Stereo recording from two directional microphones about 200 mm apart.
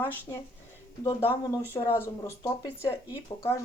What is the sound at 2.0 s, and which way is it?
Speech, 15° left (ahead or behind).